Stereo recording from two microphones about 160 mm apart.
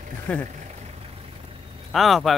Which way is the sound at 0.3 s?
10° left (ahead or behind).